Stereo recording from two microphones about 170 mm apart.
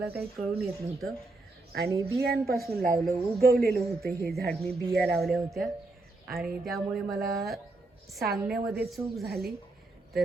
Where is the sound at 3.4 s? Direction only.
65° right (ahead or behind).